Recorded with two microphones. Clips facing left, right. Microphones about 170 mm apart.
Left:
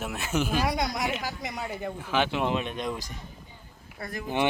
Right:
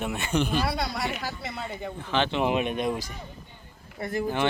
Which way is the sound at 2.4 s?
15° right (ahead or behind).